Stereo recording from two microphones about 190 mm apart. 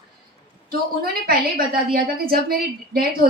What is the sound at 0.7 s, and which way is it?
A woman's voice, 50° right (ahead or behind).